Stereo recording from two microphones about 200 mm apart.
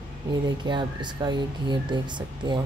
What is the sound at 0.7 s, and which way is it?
Speech, 25° right (ahead or behind).